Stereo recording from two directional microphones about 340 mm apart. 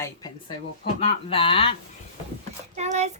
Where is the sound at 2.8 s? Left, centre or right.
Centre.